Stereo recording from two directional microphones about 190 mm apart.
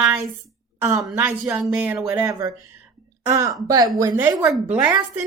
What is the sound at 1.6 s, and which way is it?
A woman's voice, 5° right (ahead or behind).